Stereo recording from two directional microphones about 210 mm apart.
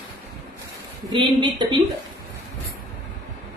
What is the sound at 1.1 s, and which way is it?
Speech, 20° right (ahead or behind).